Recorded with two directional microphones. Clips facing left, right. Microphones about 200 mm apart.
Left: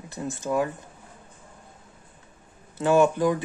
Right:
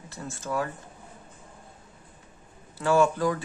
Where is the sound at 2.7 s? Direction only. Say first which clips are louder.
Left 3 dB; 20° left (ahead or behind).